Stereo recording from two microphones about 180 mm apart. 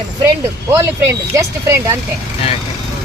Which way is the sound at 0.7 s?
15° right (ahead or behind).